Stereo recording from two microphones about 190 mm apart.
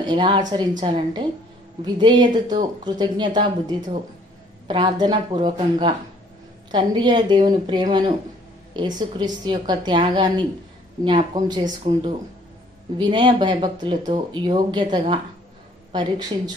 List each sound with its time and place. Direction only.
0.0 s speech: 25° right (ahead or behind)
12.9 s speech: 25° right (ahead or behind)